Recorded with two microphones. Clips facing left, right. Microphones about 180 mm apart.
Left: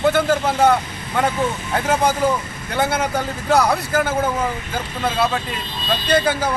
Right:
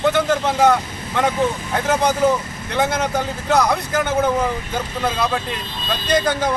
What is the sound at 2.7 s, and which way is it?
A man's voice, 10° left (ahead or behind).